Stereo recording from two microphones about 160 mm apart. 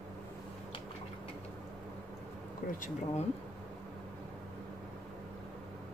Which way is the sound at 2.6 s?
55° left (ahead or behind).